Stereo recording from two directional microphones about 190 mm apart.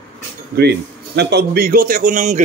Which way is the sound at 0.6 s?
60° right (ahead or behind).